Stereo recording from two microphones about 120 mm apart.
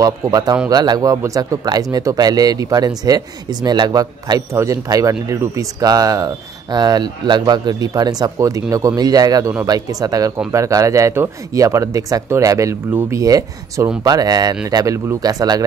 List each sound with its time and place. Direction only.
0.0 s speech: 35° right (ahead or behind)